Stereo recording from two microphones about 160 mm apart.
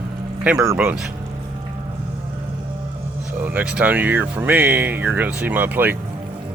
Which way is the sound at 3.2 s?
10° right (ahead or behind).